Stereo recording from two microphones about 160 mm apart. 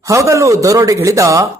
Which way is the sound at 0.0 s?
20° right (ahead or behind).